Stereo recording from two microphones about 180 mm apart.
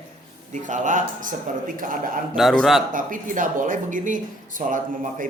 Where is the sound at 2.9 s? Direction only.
50° right (ahead or behind).